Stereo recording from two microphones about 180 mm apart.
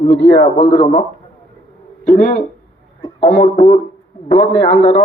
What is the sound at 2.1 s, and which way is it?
Speech, 45° left (ahead or behind).